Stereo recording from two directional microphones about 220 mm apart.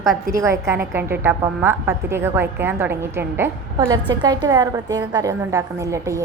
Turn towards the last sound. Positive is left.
turn(degrees=-15)  # may be behind; listen again after turning